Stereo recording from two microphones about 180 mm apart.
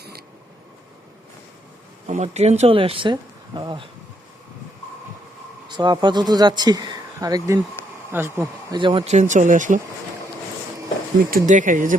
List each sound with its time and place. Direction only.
2.0 s speech: 40° right (ahead or behind)
5.6 s speech: 25° right (ahead or behind)
8.7 s speech: 25° right (ahead or behind); by 9.8 s 45° right (ahead or behind)
11.2 s speech: 50° right (ahead or behind)